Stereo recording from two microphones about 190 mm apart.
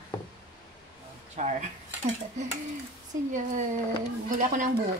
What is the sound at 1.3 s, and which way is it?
Speech, 40° right (ahead or behind).